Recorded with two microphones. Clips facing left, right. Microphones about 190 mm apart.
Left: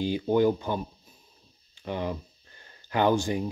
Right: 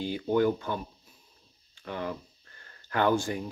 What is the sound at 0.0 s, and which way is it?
Speech, 15° left (ahead or behind).